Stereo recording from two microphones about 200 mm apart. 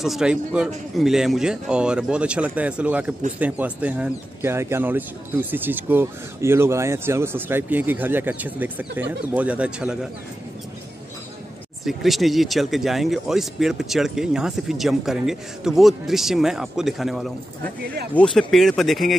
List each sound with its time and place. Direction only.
0.0 s speech: centre (ahead or behind)
11.8 s speech: centre (ahead or behind)